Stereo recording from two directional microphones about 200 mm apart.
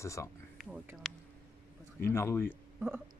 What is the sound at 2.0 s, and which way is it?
Speech, 15° left (ahead or behind).